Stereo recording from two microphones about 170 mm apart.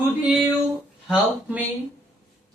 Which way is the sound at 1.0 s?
Centre (ahead or behind).